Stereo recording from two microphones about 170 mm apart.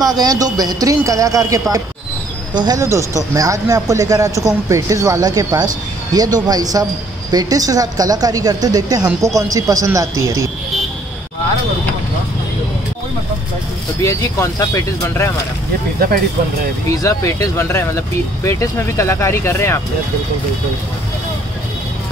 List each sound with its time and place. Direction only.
0.0 s a woman's voice: 20° right (ahead or behind)
14.0 s speech: 15° left (ahead or behind)
17.0 s speech: 20° left (ahead or behind)